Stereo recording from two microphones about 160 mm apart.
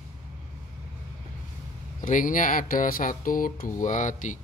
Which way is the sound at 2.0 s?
55° left (ahead or behind).